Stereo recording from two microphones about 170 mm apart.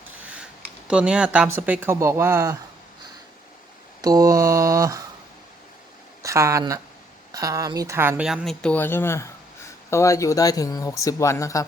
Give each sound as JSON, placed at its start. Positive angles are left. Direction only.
{"t": 0.2, "sound": "a sound", "side_deg": -5}
{"t": 0.9, "sound": "speech", "side_deg": -5}
{"t": 4.0, "sound": "mantra", "side_deg": -20}
{"t": 6.2, "sound": "speech", "side_deg": -15}